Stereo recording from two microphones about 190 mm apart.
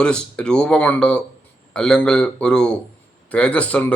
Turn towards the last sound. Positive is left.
turn(degrees=5)  # may be behind; listen again after turning